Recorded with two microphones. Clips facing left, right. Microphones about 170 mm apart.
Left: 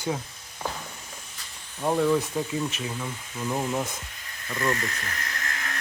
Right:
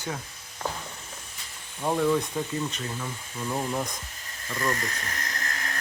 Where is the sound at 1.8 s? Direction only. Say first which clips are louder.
Left 1 dB; 5° left (ahead or behind).